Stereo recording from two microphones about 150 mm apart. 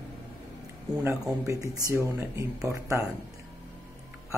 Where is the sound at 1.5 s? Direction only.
20° right (ahead or behind).